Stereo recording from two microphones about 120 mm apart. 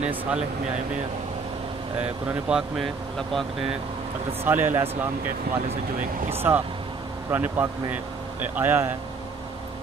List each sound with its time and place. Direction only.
0.0 s speech: 10° right (ahead or behind)
2.0 s speech: 10° right (ahead or behind)
4.5 s speech: 15° right (ahead or behind)
6.3 s speech: 20° right (ahead or behind)